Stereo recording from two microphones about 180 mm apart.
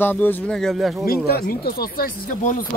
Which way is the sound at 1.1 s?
60° left (ahead or behind).